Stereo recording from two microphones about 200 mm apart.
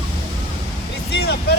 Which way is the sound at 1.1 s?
55° left (ahead or behind).